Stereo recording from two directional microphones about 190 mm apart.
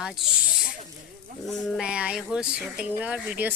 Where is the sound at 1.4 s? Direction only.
Centre (ahead or behind).